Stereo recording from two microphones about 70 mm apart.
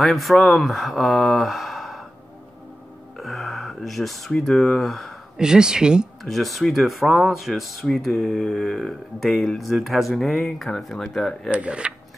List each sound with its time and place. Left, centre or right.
0.0 s speech: centre
3.2 s a sound: centre
4.3 s speech: centre
5.4 s speech: centre
6.2 s speech: centre
11.5 s speech: centre